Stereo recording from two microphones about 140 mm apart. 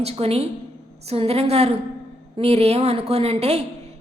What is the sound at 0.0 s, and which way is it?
A woman's voice, 45° right (ahead or behind).